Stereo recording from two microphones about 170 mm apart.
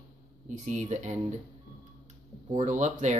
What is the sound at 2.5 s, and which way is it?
Speech, 45° right (ahead or behind).